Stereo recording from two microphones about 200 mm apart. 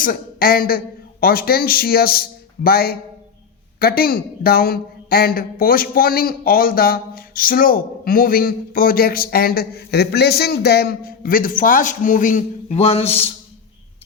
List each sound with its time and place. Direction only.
0.0 s speech: 45° left (ahead or behind); by 13.3 s 30° left (ahead or behind)